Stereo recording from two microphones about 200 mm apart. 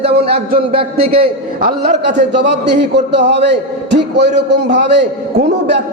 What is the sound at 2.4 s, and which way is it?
A man's voice, 60° right (ahead or behind).